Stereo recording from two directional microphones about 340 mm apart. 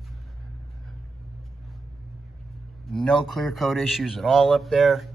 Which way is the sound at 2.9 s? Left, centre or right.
Centre.